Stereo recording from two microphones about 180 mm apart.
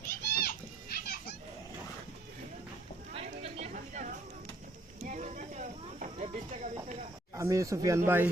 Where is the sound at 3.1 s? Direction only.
35° right (ahead or behind).